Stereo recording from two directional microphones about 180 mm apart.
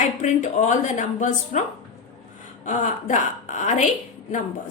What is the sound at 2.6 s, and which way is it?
A woman's voice, 45° left (ahead or behind).